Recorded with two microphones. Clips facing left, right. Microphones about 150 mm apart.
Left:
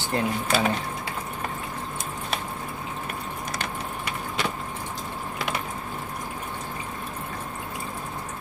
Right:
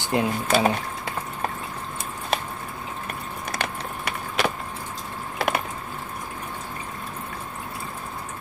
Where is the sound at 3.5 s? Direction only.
70° right (ahead or behind).